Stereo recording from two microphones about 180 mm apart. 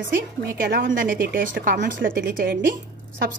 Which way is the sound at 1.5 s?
75° right (ahead or behind).